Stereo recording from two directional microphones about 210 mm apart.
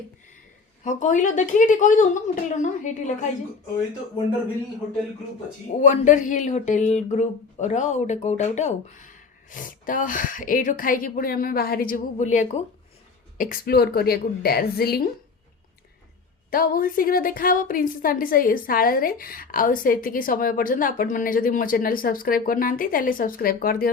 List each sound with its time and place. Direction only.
0.9 s speech: 35° left (ahead or behind)
5.8 s a woman's voice: 35° left (ahead or behind)
16.5 s a woman's voice: 45° left (ahead or behind)